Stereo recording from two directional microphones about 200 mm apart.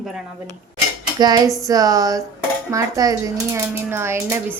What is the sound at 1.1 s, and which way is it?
Speech, 20° right (ahead or behind).